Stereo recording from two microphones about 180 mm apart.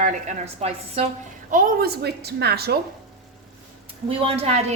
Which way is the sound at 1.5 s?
50° right (ahead or behind).